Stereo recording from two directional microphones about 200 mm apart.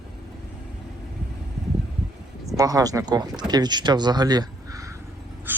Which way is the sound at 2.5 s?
20° right (ahead or behind).